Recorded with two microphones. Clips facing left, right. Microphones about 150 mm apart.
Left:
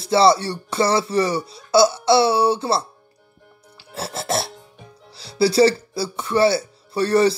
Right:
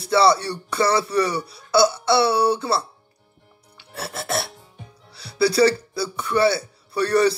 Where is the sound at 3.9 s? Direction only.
25° left (ahead or behind).